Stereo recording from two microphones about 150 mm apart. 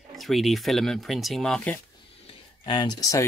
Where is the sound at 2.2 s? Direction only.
35° left (ahead or behind).